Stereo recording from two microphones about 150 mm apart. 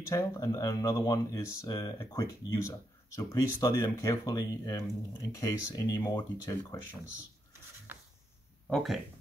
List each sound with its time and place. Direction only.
0.1 s speech: 20° left (ahead or behind)
7.9 s writing: 15° right (ahead or behind)
8.6 s speech: centre (ahead or behind)